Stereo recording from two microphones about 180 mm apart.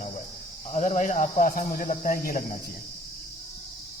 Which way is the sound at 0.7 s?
40° left (ahead or behind).